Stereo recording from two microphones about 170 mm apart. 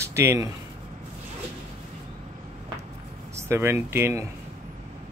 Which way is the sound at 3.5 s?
15° right (ahead or behind).